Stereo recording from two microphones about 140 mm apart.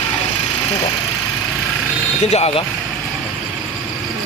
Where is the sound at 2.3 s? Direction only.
45° left (ahead or behind).